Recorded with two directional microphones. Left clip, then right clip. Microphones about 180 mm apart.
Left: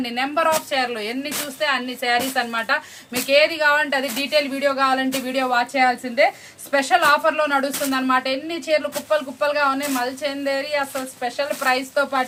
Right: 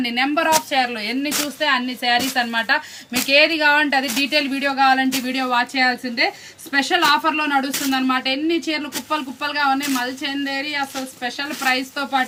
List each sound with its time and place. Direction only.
0.0 s speech: 30° left (ahead or behind)